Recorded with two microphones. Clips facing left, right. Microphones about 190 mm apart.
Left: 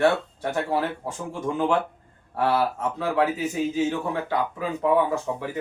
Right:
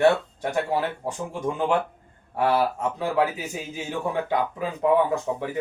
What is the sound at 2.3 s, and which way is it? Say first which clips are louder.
Speech: right 1 dB; 15° right (ahead or behind).